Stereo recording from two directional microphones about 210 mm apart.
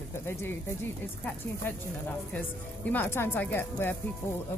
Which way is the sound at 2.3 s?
10° left (ahead or behind).